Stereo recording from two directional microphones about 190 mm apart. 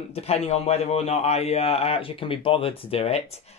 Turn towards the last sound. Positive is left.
turn(degrees=35)  # may be behind; listen again after turning